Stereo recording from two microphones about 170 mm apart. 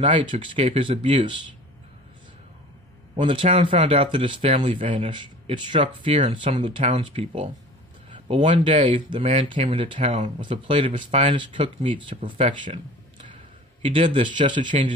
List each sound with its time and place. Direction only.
0.3 s speech: 30° right (ahead or behind)
3.3 s speech: 35° right (ahead or behind)
5.1 s speech: 30° right (ahead or behind); by 8.8 s 45° right (ahead or behind)
8.8 s speech: 35° right (ahead or behind)
12.3 s a sound: 35° right (ahead or behind)
13.8 s speech: 30° right (ahead or behind)